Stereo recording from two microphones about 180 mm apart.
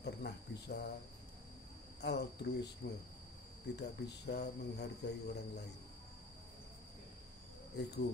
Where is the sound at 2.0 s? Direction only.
70° left (ahead or behind).